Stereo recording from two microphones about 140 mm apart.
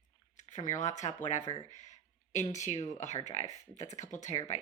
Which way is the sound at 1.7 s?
55° left (ahead or behind).